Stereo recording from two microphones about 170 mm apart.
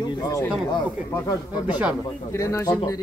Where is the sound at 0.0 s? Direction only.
20° left (ahead or behind).